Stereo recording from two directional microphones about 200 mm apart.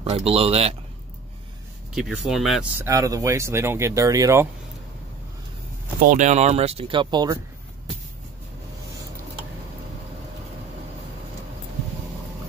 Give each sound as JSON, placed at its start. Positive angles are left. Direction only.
{"t": 0.0, "sound": "speech", "side_deg": -30}
{"t": 2.0, "sound": "speech", "side_deg": 0}
{"t": 2.8, "sound": "speech", "side_deg": -15}
{"t": 6.0, "sound": "speech", "side_deg": -35}